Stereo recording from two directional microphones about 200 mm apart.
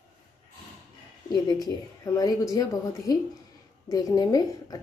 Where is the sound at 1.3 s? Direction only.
20° left (ahead or behind).